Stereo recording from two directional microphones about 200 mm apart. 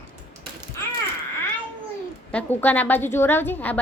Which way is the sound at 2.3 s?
10° left (ahead or behind).